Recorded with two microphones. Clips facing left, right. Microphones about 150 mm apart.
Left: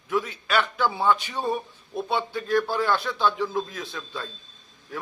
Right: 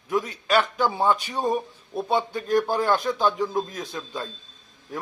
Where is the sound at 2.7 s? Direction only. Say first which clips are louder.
Right 2 dB; 45° right (ahead or behind).